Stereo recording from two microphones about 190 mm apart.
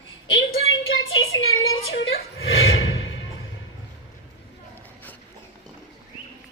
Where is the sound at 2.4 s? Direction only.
90° left.